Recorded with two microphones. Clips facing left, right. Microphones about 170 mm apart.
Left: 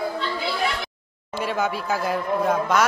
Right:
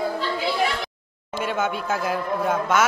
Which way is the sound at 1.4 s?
Centre (ahead or behind).